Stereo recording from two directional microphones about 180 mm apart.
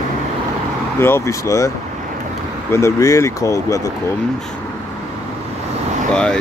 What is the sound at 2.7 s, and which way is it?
Speech, 15° left (ahead or behind).